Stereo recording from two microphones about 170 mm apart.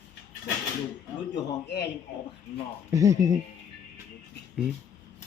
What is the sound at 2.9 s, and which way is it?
Speech, 20° right (ahead or behind).